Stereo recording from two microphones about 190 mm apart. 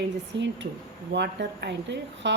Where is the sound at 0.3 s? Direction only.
70° right (ahead or behind).